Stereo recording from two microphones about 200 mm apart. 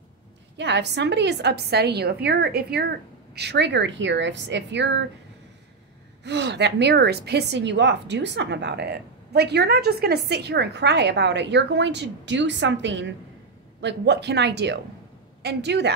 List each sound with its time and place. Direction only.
0.6 s a woman's voice: 60° right (ahead or behind)
6.2 s a woman's voice: 60° right (ahead or behind)